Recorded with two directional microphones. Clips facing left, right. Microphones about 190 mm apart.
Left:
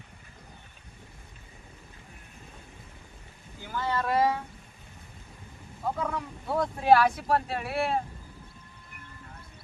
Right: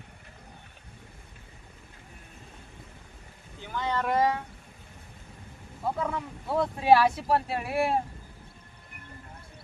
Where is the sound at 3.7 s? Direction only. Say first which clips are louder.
Even; 15° right (ahead or behind).